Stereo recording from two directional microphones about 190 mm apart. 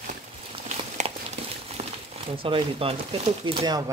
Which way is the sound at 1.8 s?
35° right (ahead or behind).